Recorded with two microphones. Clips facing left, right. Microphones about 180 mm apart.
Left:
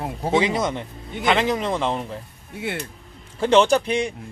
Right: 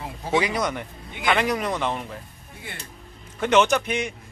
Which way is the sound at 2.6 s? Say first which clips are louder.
Left 12 dB; 70° left (ahead or behind).